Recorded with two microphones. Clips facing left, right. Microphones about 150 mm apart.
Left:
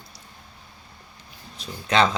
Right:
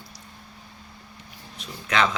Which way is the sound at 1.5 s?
35° left (ahead or behind).